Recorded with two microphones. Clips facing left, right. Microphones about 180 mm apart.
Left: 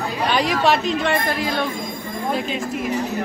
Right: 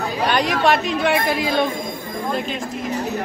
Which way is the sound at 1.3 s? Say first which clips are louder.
Right 3 dB; 15° right (ahead or behind).